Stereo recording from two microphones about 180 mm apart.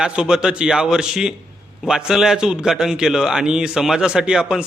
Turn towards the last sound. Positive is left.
turn(degrees=-5)  # may be behind; listen again after turning